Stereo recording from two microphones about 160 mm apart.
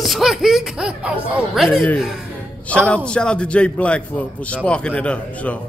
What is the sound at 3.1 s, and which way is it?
Speech, 5° left (ahead or behind).